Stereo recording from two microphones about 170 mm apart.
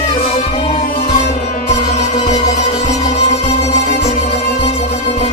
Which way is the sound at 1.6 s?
40° left (ahead or behind).